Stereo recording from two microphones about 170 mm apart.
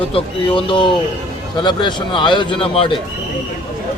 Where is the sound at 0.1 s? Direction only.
30° left (ahead or behind).